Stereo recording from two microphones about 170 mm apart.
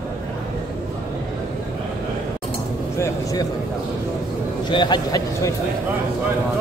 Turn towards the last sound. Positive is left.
turn(degrees=25)  # may be behind; listen again after turning